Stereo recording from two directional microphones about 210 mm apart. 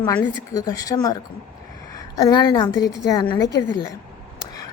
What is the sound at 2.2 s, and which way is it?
A woman's voice, 20° left (ahead or behind).